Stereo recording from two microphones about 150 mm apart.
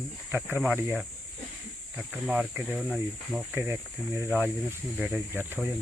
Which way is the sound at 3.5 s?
15° right (ahead or behind).